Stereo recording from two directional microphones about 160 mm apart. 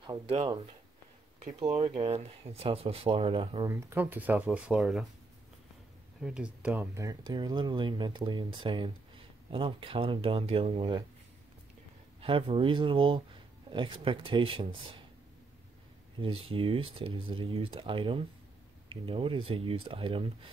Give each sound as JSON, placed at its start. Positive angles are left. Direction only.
{"t": 0.0, "sound": "speech", "side_deg": -35}
{"t": 1.4, "sound": "speech", "side_deg": -40}
{"t": 3.6, "sound": "speech", "side_deg": -15}
{"t": 6.2, "sound": "speech", "side_deg": -5}
{"t": 6.7, "sound": "speech", "side_deg": -15}
{"t": 12.2, "sound": "speech", "side_deg": -30}
{"t": 16.2, "sound": "speech", "side_deg": -35}